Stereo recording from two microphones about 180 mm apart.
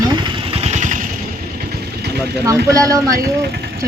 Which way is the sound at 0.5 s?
35° right (ahead or behind).